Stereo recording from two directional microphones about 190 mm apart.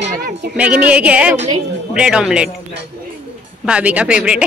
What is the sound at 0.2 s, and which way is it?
Speech, 60° right (ahead or behind).